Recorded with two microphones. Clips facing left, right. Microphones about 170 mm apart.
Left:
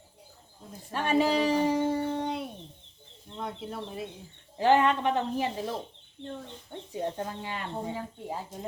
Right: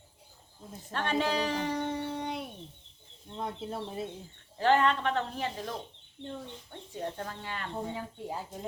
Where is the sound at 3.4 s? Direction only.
30° right (ahead or behind).